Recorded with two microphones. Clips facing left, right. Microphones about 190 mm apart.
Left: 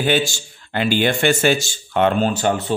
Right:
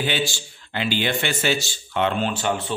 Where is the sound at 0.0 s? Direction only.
45° left (ahead or behind).